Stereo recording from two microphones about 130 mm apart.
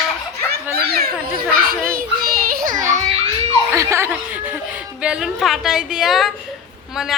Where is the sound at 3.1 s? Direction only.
50° right (ahead or behind).